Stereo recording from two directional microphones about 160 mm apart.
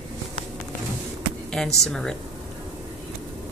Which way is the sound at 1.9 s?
5° left (ahead or behind).